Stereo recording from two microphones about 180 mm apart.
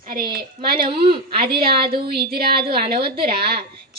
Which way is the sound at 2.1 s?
60° right (ahead or behind).